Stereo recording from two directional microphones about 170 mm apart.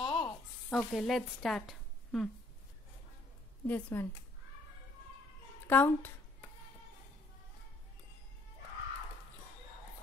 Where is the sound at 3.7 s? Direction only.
15° left (ahead or behind).